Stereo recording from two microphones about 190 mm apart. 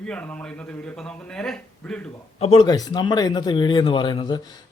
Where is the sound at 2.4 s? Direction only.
25° left (ahead or behind).